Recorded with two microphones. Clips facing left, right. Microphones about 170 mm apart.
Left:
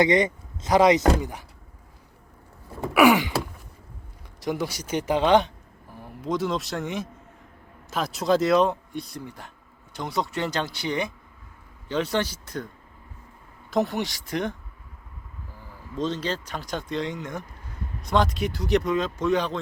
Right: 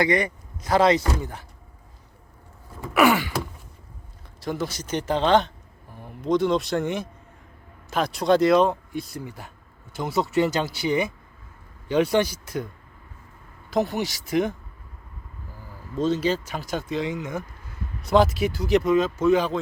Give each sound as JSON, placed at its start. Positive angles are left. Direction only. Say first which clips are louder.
{"t": 0.0, "sound": "speech", "louder": "left 2 dB", "side_deg": 20}
{"t": 2.9, "sound": "gasp", "louder": "left 2 dB", "side_deg": 10}
{"t": 4.4, "sound": "speech", "louder": "left 1 dB", "side_deg": 15}
{"t": 13.7, "sound": "speech", "louder": "right 1 dB", "side_deg": 0}
{"t": 16.0, "sound": "speech", "louder": "right 5 dB", "side_deg": -10}